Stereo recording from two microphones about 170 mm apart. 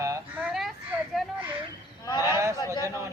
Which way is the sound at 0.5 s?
Centre (ahead or behind).